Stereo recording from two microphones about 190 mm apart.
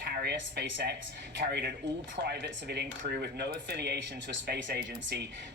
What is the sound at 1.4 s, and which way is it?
Speech, 45° right (ahead or behind).